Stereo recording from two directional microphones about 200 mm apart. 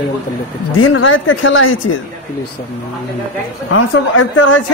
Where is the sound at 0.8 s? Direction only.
80° left.